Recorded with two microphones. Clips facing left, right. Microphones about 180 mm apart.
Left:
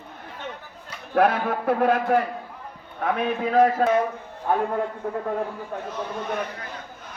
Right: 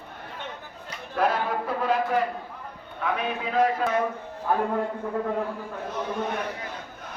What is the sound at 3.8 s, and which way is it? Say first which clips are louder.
Speech: left 6 dB; 45° left (ahead or behind).